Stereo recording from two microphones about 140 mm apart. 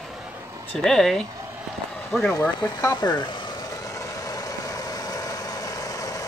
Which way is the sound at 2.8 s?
30° left (ahead or behind).